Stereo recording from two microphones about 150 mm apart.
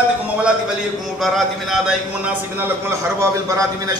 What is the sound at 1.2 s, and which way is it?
Speech, centre (ahead or behind).